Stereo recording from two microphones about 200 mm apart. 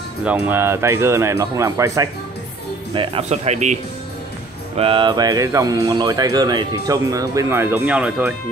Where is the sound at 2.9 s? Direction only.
25° right (ahead or behind).